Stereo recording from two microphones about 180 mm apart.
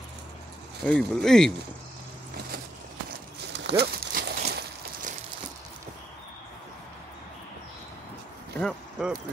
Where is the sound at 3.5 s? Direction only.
70° right (ahead or behind).